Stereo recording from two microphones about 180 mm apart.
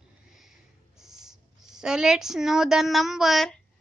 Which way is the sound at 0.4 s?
Centre (ahead or behind).